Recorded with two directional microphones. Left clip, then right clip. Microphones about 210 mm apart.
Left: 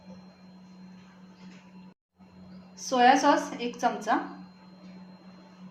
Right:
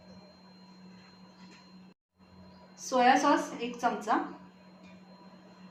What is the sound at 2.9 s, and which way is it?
A woman's voice, 20° left (ahead or behind).